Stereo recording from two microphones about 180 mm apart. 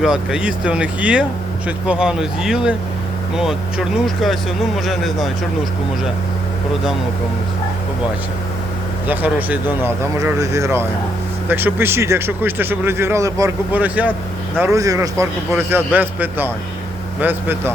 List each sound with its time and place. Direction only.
0.0 s speech: 5° right (ahead or behind)
9.0 s a man's voice: 10° right (ahead or behind)